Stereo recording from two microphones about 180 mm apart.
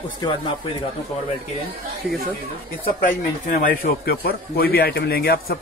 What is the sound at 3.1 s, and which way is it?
Speech, 50° left (ahead or behind).